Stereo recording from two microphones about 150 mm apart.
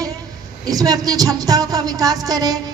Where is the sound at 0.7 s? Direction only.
25° right (ahead or behind).